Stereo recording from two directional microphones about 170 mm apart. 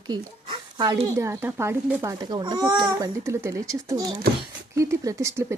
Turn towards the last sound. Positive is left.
turn(degrees=-15)  # may be behind; listen again after turning